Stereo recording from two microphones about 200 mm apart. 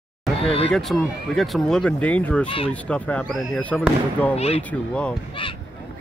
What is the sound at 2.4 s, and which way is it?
Speech, 25° left (ahead or behind).